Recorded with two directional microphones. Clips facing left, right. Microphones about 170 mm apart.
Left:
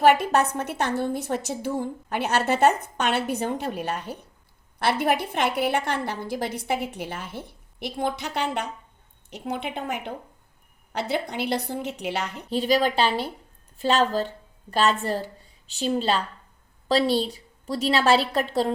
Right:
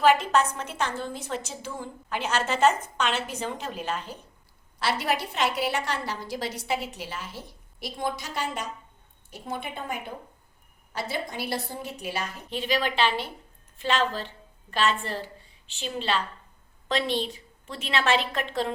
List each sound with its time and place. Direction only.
0.0 s a woman's voice: 60° left (ahead or behind)
12.5 s a woman's voice: 40° left (ahead or behind)